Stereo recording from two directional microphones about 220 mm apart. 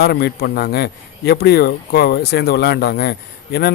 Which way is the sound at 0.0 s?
45° left (ahead or behind).